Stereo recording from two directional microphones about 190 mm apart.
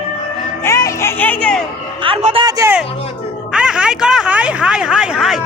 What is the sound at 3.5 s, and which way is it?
Speech, 5° right (ahead or behind).